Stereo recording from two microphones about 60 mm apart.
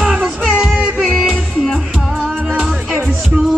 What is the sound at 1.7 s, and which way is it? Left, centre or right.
Music, centre.